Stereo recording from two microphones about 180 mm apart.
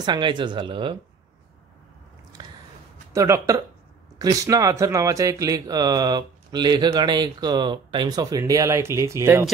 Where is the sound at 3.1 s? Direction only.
15° right (ahead or behind).